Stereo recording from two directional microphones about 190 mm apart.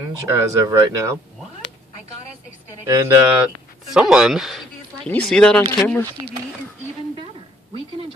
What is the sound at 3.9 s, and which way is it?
Speech, 5° right (ahead or behind).